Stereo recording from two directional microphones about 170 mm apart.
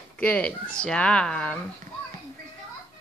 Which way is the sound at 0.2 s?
10° left (ahead or behind).